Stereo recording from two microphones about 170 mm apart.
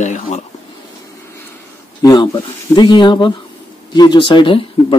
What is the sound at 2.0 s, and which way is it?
Speech, 20° left (ahead or behind).